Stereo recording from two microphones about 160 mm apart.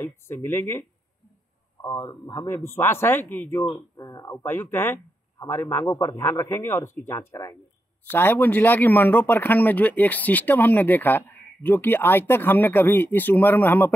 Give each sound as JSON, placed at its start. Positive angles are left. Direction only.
{"t": 0.0, "sound": "speech", "side_deg": 15}